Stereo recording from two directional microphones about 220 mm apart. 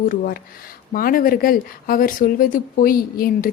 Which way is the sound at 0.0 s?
40° left (ahead or behind).